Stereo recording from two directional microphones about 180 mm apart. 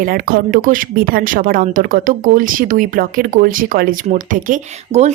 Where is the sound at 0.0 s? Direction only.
55° right (ahead or behind).